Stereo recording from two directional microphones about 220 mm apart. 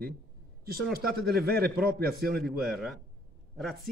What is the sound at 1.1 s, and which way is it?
A man's voice, 45° right (ahead or behind).